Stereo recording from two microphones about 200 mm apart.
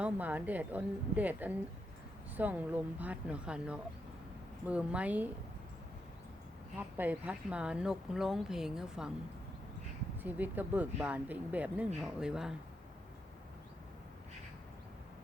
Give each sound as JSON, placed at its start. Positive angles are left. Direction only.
{"t": 0.0, "sound": "speech", "side_deg": -10}
{"t": 6.7, "sound": "speech", "side_deg": -10}
{"t": 10.2, "sound": "speech", "side_deg": -10}